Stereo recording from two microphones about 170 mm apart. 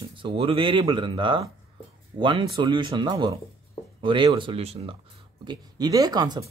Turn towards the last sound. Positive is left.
turn(degrees=-25)  # may be behind; listen again after turning